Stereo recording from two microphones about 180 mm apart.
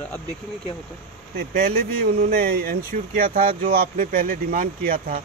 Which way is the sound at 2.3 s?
60° right (ahead or behind).